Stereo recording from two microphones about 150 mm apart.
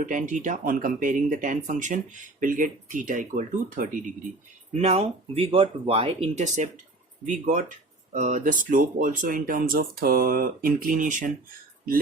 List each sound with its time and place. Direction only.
0.0 s speech: 60° right (ahead or behind)
4.7 s speech: 45° right (ahead or behind); by 11.3 s 60° right (ahead or behind)